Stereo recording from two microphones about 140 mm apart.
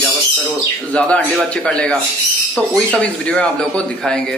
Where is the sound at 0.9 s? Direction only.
5° left (ahead or behind).